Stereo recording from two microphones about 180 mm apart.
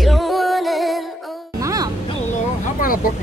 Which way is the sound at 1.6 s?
20° right (ahead or behind).